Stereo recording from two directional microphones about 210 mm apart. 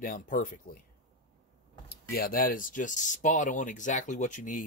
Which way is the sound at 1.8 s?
45° left (ahead or behind).